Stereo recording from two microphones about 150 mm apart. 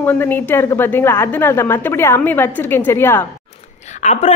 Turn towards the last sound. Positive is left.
turn(degrees=50)  # may be behind; listen again after turning